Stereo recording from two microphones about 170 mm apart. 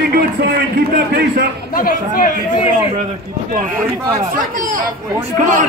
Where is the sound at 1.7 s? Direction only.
55° left (ahead or behind).